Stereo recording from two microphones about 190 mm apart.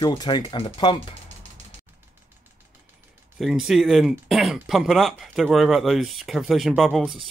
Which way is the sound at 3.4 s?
5° right (ahead or behind).